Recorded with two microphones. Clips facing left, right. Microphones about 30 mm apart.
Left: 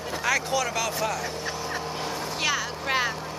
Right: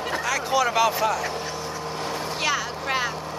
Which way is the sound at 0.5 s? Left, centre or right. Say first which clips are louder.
Right 6 dB; centre.